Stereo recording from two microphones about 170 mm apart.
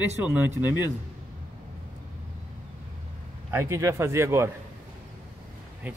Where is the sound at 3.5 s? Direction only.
15° right (ahead or behind).